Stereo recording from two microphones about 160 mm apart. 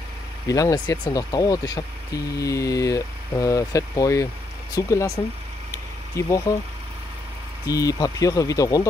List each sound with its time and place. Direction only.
0.5 s speech: 20° left (ahead or behind)
5.7 s a sound: 20° left (ahead or behind)
7.6 s speech: 20° left (ahead or behind)